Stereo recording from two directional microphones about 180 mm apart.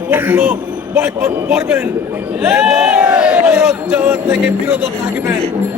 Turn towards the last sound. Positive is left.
turn(degrees=-5)  # may be behind; listen again after turning